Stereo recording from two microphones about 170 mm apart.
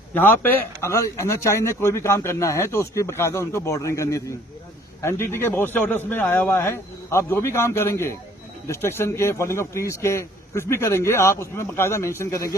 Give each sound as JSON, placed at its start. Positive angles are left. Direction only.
{"t": 0.1, "sound": "a man's voice", "side_deg": 10}